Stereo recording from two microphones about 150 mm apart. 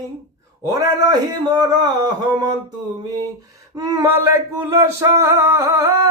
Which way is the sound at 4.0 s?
20° right (ahead or behind).